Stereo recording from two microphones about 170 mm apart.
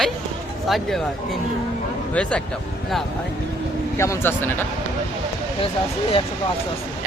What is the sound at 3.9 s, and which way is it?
Speech, 15° left (ahead or behind).